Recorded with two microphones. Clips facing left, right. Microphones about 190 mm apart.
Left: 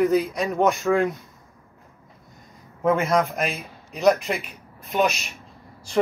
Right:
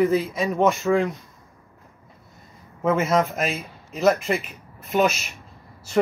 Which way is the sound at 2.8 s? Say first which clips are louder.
Even; centre (ahead or behind).